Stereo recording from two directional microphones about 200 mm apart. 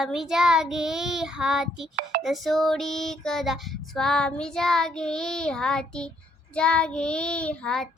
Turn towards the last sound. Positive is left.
turn(degrees=5)  # may be behind; listen again after turning